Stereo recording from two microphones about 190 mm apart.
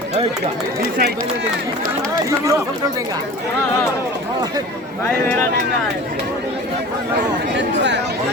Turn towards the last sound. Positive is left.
turn(degrees=-65)  # may be behind; listen again after turning